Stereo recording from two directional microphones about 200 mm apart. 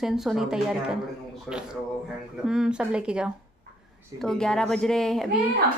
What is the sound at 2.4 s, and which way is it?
Mantra, 5° right (ahead or behind).